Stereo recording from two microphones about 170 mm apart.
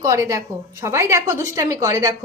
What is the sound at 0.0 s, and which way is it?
A woman's voice, 20° right (ahead or behind).